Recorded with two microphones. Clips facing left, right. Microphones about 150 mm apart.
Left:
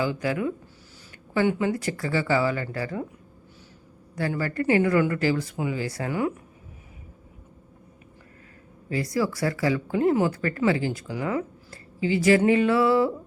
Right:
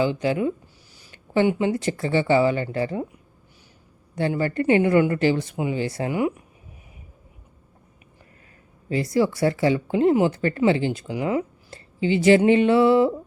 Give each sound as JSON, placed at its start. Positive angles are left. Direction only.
{"t": 0.0, "sound": "speech", "side_deg": -25}
{"t": 4.1, "sound": "speech", "side_deg": -25}
{"t": 8.9, "sound": "speech", "side_deg": -25}